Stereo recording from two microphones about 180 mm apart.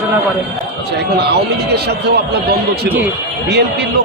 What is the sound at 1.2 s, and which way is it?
A man's voice, 65° right (ahead or behind).